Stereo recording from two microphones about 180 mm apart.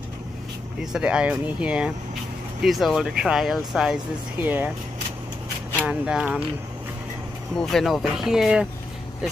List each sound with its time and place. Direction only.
0.9 s speech: 5° right (ahead or behind)
5.9 s speech: 5° right (ahead or behind)
7.5 s speech: centre (ahead or behind)